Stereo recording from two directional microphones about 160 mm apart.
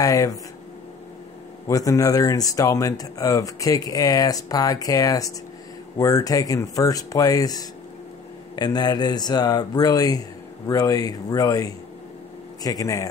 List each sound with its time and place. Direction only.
0.0 s speech: 20° left (ahead or behind)
1.7 s speech: 20° left (ahead or behind)